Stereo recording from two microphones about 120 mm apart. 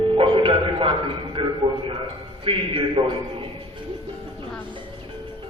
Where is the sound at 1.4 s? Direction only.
45° right (ahead or behind).